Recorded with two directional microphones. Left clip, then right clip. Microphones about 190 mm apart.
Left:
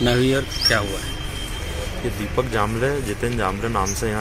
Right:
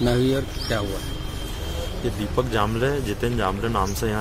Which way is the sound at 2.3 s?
15° right (ahead or behind).